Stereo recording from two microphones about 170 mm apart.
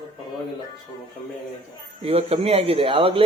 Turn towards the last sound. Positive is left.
turn(degrees=-30)  # may be behind; listen again after turning